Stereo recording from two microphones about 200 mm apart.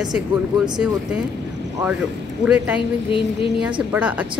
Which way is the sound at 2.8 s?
25° left (ahead or behind).